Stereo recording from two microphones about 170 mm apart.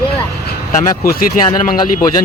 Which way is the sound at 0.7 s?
60° left (ahead or behind).